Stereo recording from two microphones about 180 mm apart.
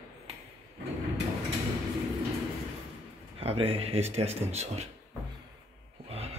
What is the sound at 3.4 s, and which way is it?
Speech, 35° right (ahead or behind).